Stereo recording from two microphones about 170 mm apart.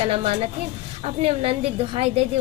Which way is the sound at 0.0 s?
35° right (ahead or behind).